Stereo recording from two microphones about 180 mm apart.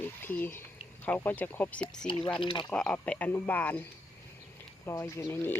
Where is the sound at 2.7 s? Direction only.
5° left (ahead or behind).